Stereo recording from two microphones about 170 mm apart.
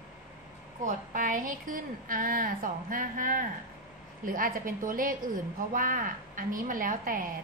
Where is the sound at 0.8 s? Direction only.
50° right (ahead or behind).